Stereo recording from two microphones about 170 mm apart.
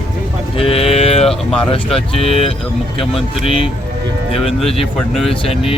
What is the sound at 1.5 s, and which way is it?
Speech, 35° left (ahead or behind).